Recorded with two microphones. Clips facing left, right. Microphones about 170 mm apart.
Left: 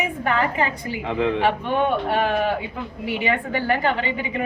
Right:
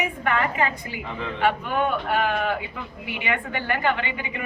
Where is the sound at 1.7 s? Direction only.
30° left (ahead or behind).